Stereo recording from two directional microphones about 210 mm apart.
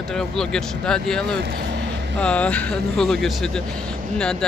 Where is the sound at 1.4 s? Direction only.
50° right (ahead or behind).